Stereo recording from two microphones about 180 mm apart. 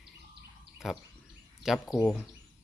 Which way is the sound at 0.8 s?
Centre (ahead or behind).